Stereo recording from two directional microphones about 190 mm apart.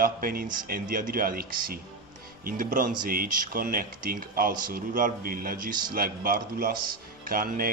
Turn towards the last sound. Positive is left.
turn(degrees=-50)  # may be behind; listen again after turning